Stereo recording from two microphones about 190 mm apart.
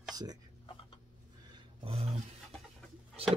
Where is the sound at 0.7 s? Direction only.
30° left (ahead or behind).